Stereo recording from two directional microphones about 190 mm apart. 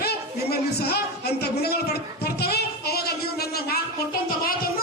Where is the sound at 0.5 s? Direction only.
55° left (ahead or behind).